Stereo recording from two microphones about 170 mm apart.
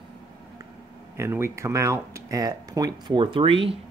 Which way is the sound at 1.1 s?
15° right (ahead or behind).